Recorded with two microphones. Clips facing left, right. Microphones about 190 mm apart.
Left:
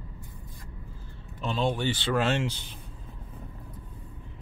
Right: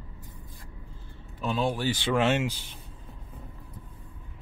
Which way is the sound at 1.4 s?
5° right (ahead or behind).